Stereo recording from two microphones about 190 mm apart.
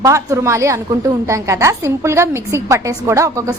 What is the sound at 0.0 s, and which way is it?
A woman's voice, 15° right (ahead or behind).